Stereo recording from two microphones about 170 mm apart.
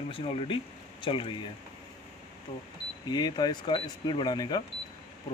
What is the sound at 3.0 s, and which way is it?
Speech, 25° left (ahead or behind).